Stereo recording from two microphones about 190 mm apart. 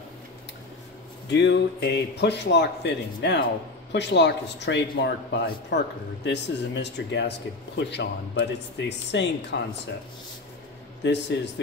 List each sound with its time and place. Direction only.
1.4 s speech: 65° left (ahead or behind)
11.0 s speech: 70° left (ahead or behind)